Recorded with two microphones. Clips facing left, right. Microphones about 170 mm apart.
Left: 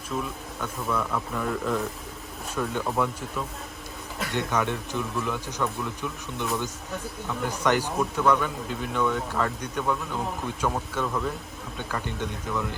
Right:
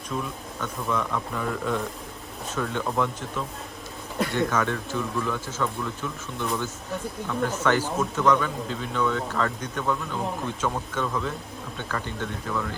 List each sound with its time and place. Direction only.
0.6 s speech: 5° left (ahead or behind)
4.3 s speech: 20° left (ahead or behind)